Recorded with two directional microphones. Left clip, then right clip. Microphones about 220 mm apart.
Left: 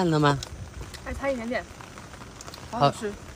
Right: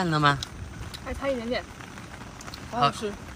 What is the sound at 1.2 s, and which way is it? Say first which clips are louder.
Speech: even; centre (ahead or behind).